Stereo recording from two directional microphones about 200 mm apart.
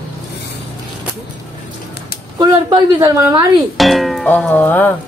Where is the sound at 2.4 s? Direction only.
20° right (ahead or behind).